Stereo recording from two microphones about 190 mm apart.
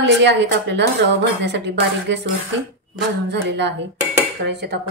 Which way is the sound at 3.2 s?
60° right (ahead or behind).